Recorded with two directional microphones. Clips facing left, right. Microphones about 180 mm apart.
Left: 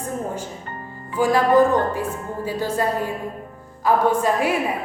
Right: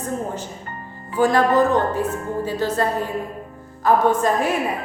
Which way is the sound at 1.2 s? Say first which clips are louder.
Even; 10° left (ahead or behind).